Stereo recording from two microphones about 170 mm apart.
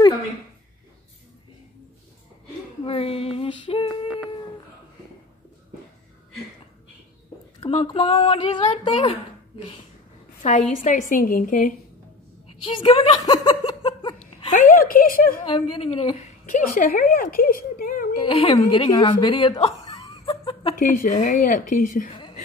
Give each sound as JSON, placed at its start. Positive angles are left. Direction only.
{"t": 2.8, "sound": "female singing", "side_deg": 35}
{"t": 7.6, "sound": "speech", "side_deg": 35}
{"t": 10.4, "sound": "a woman's voice", "side_deg": 45}
{"t": 12.6, "sound": "speech", "side_deg": 30}
{"t": 13.3, "sound": "a sound", "side_deg": 25}
{"t": 14.5, "sound": "a sound", "side_deg": 55}
{"t": 15.4, "sound": "speech", "side_deg": 30}
{"t": 16.4, "sound": "speech", "side_deg": 50}
{"t": 18.1, "sound": "a woman's voice", "side_deg": 30}
{"t": 20.2, "sound": "chuckle", "side_deg": 30}
{"t": 20.8, "sound": "a woman's voice", "side_deg": 55}